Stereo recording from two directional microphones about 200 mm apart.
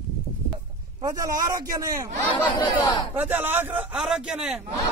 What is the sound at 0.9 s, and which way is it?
A man's voice, 15° right (ahead or behind).